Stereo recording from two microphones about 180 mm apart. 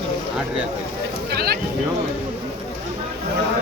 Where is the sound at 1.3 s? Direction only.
60° right (ahead or behind).